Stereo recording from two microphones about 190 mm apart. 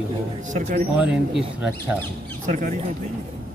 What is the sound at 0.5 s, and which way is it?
Speech, 40° right (ahead or behind).